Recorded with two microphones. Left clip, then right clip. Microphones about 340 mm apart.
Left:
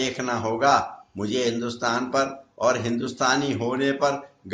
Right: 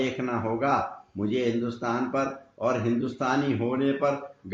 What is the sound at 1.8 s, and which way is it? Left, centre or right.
A man's voice, left.